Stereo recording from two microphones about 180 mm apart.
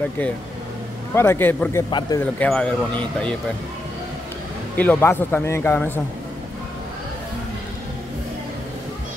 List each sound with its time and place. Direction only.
1.1 s speech: 15° left (ahead or behind)
1.9 s speech: 25° left (ahead or behind)
2.1 s speech: 10° left (ahead or behind)
4.7 s speech: 10° left (ahead or behind)